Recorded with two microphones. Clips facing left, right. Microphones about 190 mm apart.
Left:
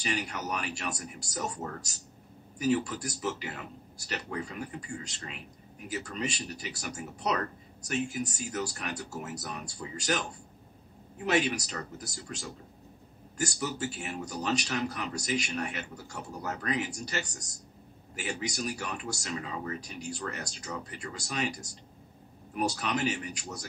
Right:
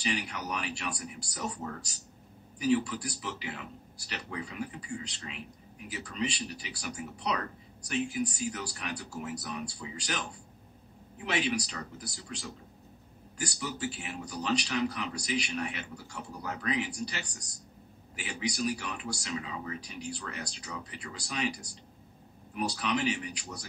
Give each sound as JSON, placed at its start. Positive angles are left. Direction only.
{"t": 0.0, "sound": "speech", "side_deg": 45}